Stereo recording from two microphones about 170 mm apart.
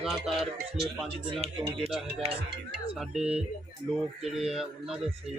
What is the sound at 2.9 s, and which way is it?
Speech, 5° right (ahead or behind).